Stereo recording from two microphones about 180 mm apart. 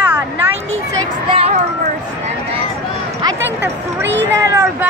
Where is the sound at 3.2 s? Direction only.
10° right (ahead or behind).